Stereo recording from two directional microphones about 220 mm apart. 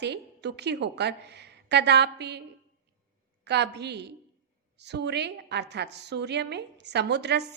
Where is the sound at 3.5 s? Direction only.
50° right (ahead or behind).